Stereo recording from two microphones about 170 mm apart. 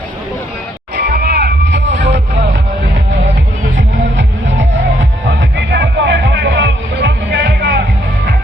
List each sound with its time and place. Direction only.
0.9 s music: 65° right (ahead or behind); by 2.2 s 90° right
3.8 s music: 90° right